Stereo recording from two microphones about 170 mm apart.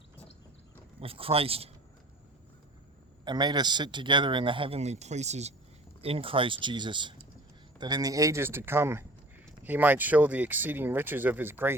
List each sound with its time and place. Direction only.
0.9 s speech: 35° right (ahead or behind)
3.2 s a man's voice: 25° right (ahead or behind)